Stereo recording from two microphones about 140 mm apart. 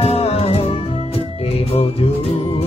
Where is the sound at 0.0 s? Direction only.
45° left (ahead or behind).